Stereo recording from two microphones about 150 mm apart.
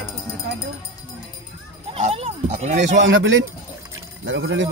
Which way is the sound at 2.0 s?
40° right (ahead or behind).